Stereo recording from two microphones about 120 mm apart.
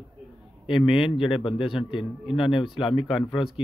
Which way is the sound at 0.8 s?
5° right (ahead or behind).